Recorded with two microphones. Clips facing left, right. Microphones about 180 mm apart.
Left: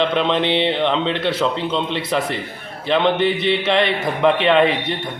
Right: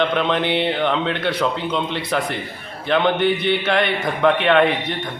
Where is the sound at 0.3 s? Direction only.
30° left (ahead or behind).